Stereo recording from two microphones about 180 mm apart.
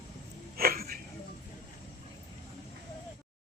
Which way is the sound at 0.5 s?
55° right (ahead or behind).